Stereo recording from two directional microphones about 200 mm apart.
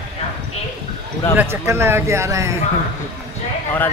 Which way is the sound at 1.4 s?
10° right (ahead or behind).